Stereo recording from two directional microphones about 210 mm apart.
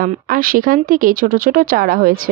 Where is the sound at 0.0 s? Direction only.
40° right (ahead or behind).